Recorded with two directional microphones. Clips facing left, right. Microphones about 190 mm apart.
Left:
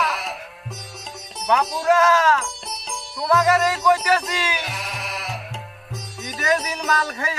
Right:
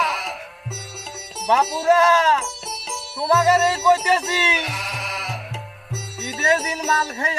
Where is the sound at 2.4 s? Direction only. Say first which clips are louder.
Right 1 dB; 5° right (ahead or behind).